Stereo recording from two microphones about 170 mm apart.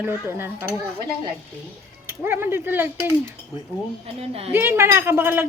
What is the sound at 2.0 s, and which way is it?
Speech, 15° right (ahead or behind).